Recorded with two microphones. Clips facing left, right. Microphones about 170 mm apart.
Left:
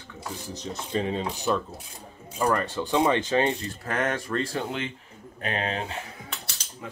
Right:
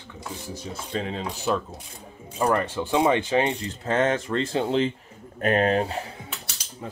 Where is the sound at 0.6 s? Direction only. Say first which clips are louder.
Left 2 dB; centre (ahead or behind).